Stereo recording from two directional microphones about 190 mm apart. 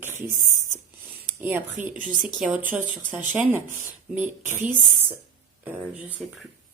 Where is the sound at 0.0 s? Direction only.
10° right (ahead or behind).